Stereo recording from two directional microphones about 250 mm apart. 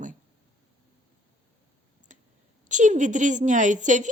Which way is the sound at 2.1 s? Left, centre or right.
Right.